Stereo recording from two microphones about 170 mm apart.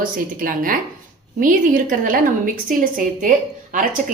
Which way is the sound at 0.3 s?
55° right (ahead or behind).